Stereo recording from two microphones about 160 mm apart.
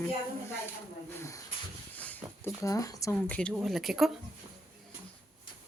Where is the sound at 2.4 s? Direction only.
20° left (ahead or behind).